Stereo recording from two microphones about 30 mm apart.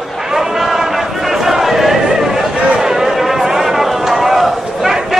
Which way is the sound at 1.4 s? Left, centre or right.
Centre.